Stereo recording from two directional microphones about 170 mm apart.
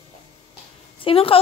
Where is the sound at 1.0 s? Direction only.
30° left (ahead or behind).